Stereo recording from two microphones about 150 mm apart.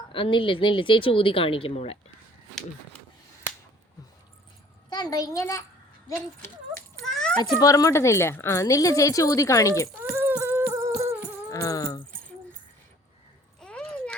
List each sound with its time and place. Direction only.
0.1 s speech: 35° left (ahead or behind)
4.9 s speech: 25° left (ahead or behind)
7.0 s children playing: 5° left (ahead or behind)
7.3 s speech: 25° left (ahead or behind)
10.0 s a sound: 15° right (ahead or behind)
10.7 s music: 20° right (ahead or behind)
11.5 s speech: 25° left (ahead or behind)
13.6 s a sound: 5° left (ahead or behind)